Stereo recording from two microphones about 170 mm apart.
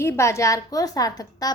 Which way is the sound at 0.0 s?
15° left (ahead or behind).